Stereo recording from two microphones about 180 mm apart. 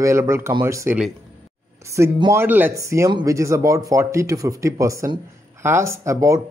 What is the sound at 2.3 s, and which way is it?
Speech, 10° right (ahead or behind).